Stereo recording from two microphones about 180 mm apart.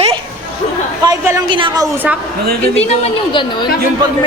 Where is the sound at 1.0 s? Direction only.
25° right (ahead or behind).